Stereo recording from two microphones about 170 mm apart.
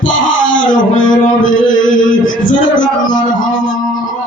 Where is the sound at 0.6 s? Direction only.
50° left (ahead or behind).